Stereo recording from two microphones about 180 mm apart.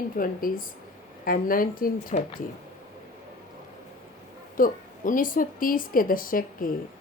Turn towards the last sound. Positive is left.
turn(degrees=50)  # may be behind; listen again after turning